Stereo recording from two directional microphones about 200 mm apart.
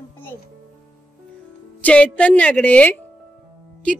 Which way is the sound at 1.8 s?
5° left (ahead or behind).